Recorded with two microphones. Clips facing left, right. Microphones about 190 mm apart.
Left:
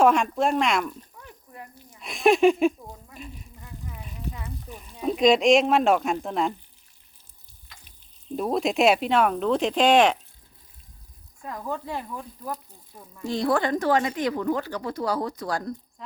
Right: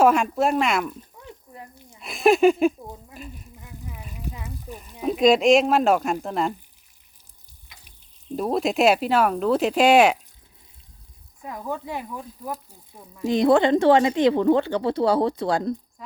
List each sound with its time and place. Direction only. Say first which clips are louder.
0.0 s speech: right 2 dB; 5° right (ahead or behind)
2.0 s speech: right 2 dB; 5° right (ahead or behind)
3.2 s insect: right 1 dB; centre (ahead or behind)
3.6 s a sound: right 1 dB; 15° right (ahead or behind)
4.7 s speech: right 1 dB; centre (ahead or behind)
8.4 s speech: right 1 dB; centre (ahead or behind)
11.4 s speech: right 1 dB; 10° right (ahead or behind)
16.0 s speech: even; 5° right (ahead or behind)